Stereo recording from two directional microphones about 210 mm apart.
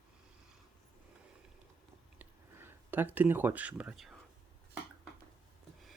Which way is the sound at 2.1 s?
10° right (ahead or behind).